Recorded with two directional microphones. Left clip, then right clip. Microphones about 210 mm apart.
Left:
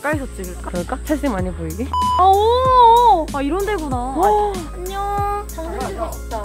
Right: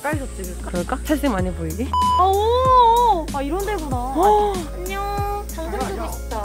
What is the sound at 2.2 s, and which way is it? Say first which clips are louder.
A child's voice: left 3 dB; 50° left (ahead or behind).